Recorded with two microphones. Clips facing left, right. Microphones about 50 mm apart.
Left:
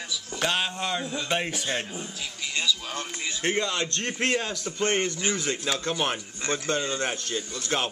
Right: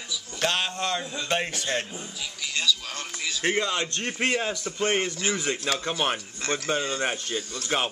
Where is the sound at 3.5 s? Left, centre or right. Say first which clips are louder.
Right 1 dB; centre.